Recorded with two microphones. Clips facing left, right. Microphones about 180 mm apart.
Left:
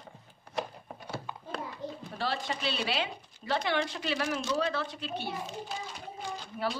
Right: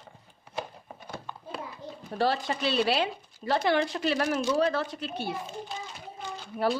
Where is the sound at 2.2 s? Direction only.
45° right (ahead or behind).